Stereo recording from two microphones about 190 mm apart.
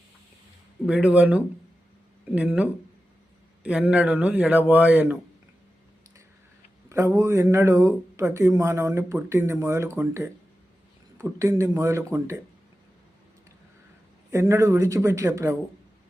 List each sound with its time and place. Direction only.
0.9 s speech: 5° right (ahead or behind)
6.8 s speech: 15° right (ahead or behind)
14.3 s speech: 15° right (ahead or behind)